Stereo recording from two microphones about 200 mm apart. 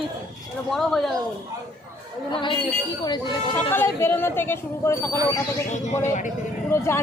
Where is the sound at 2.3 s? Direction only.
25° left (ahead or behind).